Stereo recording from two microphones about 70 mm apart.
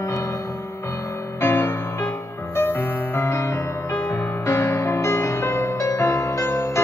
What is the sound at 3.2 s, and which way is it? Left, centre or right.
Music, left.